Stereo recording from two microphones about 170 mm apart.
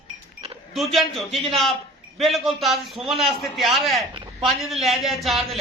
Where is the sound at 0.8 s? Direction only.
Centre (ahead or behind).